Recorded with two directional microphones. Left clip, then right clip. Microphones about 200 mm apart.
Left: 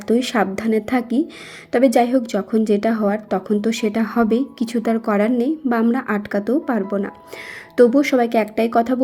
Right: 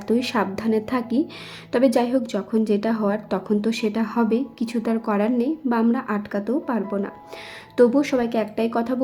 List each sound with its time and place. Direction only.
0.1 s a woman's voice: 10° left (ahead or behind)